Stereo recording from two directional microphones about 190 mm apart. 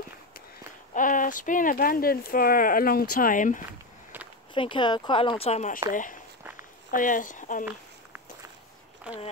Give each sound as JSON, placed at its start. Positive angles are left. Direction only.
{"t": 0.9, "sound": "speech", "side_deg": 45}
{"t": 4.6, "sound": "speech", "side_deg": 25}
{"t": 7.6, "sound": "walk", "side_deg": -10}
{"t": 9.1, "sound": "speech", "side_deg": -5}